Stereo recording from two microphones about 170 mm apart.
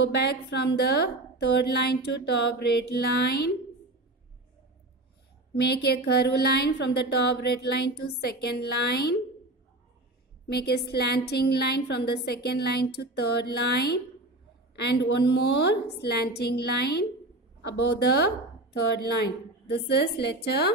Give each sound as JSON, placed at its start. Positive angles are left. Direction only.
{"t": 0.0, "sound": "speech", "side_deg": 75}
{"t": 5.6, "sound": "speech", "side_deg": 75}
{"t": 10.5, "sound": "speech", "side_deg": 70}
{"t": 19.7, "sound": "speech", "side_deg": 75}